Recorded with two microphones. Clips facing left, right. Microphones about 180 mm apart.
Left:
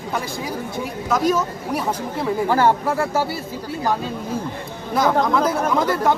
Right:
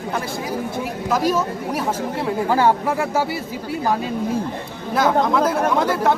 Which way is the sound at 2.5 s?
15° right (ahead or behind).